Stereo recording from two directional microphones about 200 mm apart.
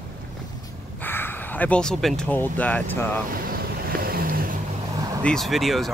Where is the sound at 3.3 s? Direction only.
45° right (ahead or behind).